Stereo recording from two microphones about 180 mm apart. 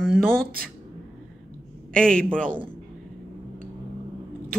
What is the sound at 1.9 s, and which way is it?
Speech, 5° left (ahead or behind).